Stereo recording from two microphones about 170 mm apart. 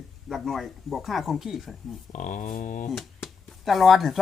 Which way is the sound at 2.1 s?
50° left (ahead or behind).